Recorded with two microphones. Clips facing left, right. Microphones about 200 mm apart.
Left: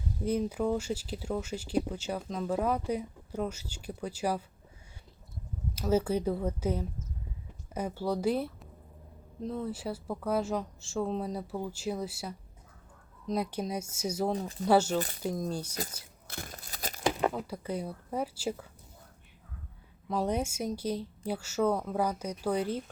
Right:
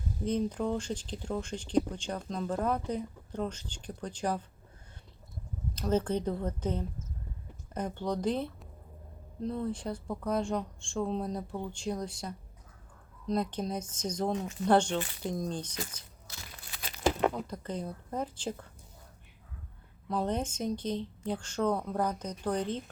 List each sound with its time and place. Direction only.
0.3 s speech: 10° left (ahead or behind)
5.7 s speech: 10° left (ahead or behind)
14.3 s speech: 35° left (ahead or behind)
14.6 s speech: 5° left (ahead or behind)
14.9 s speech: 40° left (ahead or behind)
15.2 s speech: 5° left (ahead or behind)
16.2 s tearing: 55° left (ahead or behind)
17.0 s speech: centre (ahead or behind)
20.1 s speech: 10° left (ahead or behind)